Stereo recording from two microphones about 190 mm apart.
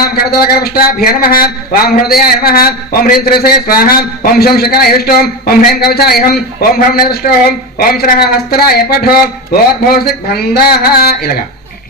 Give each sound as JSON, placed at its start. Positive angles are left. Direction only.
{"t": 0.0, "sound": "speech", "side_deg": 55}